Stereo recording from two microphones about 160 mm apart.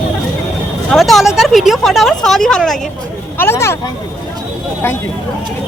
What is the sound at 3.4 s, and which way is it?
Speech, 15° left (ahead or behind).